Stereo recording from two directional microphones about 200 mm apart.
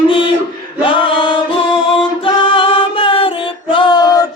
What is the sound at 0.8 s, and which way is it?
A capella, 25° left (ahead or behind).